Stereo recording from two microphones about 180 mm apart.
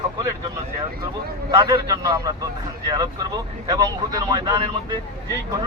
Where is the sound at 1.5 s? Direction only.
20° right (ahead or behind).